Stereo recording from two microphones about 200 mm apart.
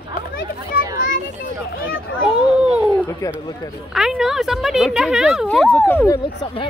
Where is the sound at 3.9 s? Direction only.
Centre (ahead or behind); by 6.2 s 15° left (ahead or behind).